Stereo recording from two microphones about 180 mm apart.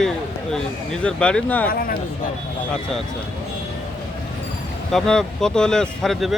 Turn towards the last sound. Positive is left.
turn(degrees=0)  # may be behind; listen again after turning